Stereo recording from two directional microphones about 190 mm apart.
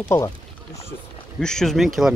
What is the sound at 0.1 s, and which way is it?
Speech, 15° left (ahead or behind).